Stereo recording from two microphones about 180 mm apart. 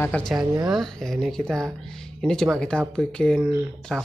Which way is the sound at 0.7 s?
Centre (ahead or behind).